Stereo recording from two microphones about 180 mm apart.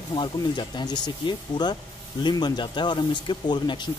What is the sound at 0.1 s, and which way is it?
Speech, 25° left (ahead or behind).